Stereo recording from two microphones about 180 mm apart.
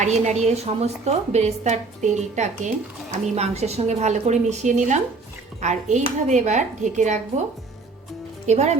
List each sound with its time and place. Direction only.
0.0 s a woman's voice: 40° right (ahead or behind)
8.4 s a woman's voice: 40° right (ahead or behind)